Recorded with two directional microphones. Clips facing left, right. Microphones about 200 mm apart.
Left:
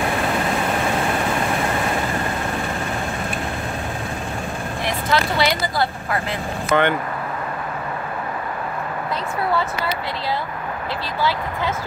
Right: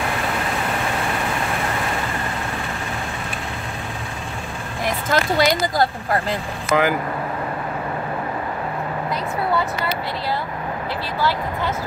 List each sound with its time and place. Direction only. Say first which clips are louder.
4.8 s speech: right 1 dB; 45° right (ahead or behind)
6.7 s speech: even; 5° right (ahead or behind)